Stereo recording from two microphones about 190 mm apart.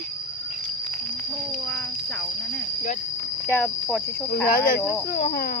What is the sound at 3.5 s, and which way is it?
Speech, 10° left (ahead or behind).